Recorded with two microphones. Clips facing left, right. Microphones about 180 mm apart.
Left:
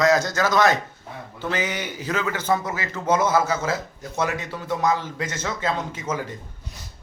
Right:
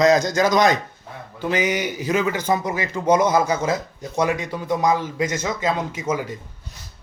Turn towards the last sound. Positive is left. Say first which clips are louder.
# right 4 dB
turn(degrees=-10)  # may be behind; listen again after turning